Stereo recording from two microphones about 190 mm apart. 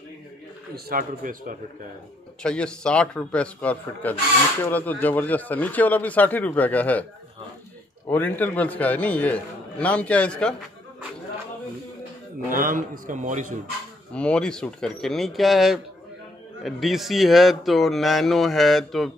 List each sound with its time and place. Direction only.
0.7 s a man's voice: 50° right (ahead or behind)
2.4 s speech: 5° left (ahead or behind)
8.1 s speech: 10° left (ahead or behind)
12.5 s a man's voice: 45° right (ahead or behind)
14.1 s speech: 5° left (ahead or behind)